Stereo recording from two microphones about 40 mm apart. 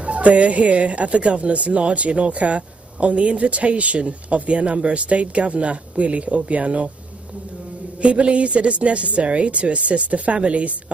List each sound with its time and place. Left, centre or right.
0.0 s speech: right
8.0 s speech: right